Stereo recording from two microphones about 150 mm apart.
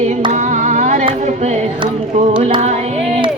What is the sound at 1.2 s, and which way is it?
Speech, 50° right (ahead or behind).